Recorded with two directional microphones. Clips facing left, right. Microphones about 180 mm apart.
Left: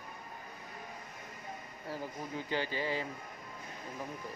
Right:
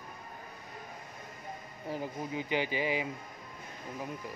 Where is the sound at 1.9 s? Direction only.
15° right (ahead or behind).